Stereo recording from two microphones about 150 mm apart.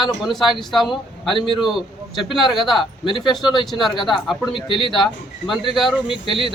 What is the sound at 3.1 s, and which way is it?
Speech, 30° left (ahead or behind).